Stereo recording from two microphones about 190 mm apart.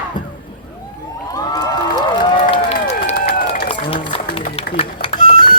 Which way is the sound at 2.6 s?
35° left (ahead or behind).